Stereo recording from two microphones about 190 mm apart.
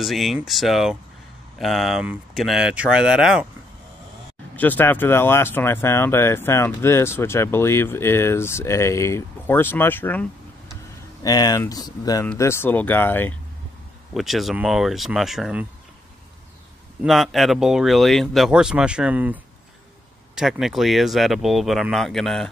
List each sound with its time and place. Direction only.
0.0 s speech: centre (ahead or behind)
4.6 s speech: 10° left (ahead or behind)
11.2 s speech: 20° left (ahead or behind)
14.1 s speech: centre (ahead or behind)
17.0 s speech: centre (ahead or behind)